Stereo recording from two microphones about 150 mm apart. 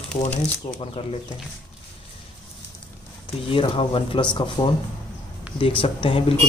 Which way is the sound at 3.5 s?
35° left (ahead or behind).